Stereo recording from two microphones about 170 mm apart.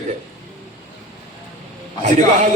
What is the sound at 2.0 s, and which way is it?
Speech, 45° right (ahead or behind).